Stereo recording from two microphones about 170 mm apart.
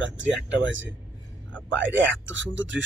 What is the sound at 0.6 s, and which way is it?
Speech, 90° right.